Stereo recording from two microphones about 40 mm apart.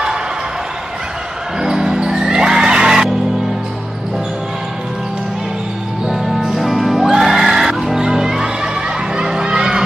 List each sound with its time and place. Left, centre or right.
1.6 s music: centre
6.0 s music: centre
9.1 s a sound: centre